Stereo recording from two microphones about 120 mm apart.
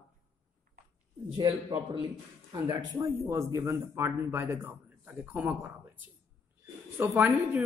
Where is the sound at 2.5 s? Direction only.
40° right (ahead or behind); by 5.7 s 15° right (ahead or behind).